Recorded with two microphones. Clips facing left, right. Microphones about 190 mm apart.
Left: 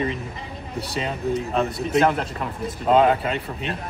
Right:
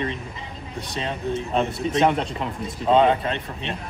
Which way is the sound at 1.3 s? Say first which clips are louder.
Even; 30° right (ahead or behind).